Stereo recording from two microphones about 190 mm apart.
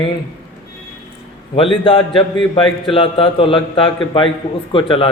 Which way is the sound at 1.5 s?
30° left (ahead or behind).